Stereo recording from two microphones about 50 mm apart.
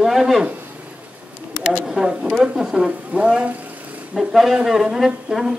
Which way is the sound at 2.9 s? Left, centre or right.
Right.